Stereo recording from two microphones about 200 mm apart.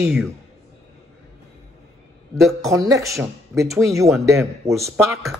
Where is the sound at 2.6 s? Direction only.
15° right (ahead or behind).